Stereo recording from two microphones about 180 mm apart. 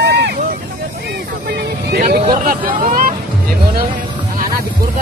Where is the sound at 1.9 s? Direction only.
50° right (ahead or behind).